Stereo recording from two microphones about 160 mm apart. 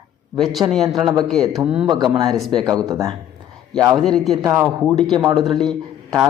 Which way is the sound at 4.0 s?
Centre (ahead or behind).